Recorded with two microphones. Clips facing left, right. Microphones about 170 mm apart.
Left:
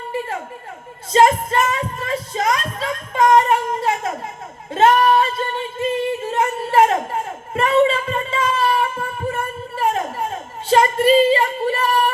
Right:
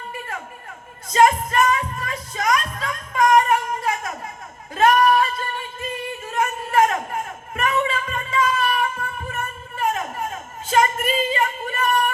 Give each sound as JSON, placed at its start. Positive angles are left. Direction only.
{"t": 1.1, "sound": "music", "side_deg": 30}
{"t": 4.7, "sound": "singing", "side_deg": 25}